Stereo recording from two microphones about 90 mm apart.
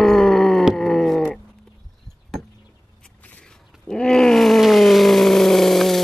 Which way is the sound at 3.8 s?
10° left (ahead or behind).